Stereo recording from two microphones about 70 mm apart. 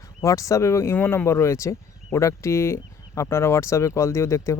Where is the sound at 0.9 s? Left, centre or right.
Left.